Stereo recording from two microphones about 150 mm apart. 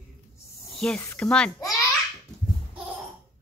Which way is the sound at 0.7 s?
5° left (ahead or behind).